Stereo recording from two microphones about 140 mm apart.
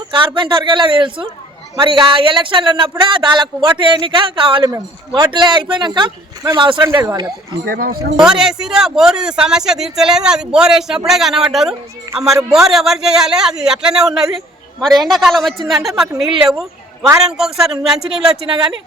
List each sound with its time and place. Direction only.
0.3 s a man's voice: 35° right (ahead or behind)
4.7 s a man's voice: 25° right (ahead or behind)
7.6 s speech: 90° right
8.2 s speech: 5° right (ahead or behind)
16.5 s a sound: centre (ahead or behind)
17.2 s speech: 5° right (ahead or behind)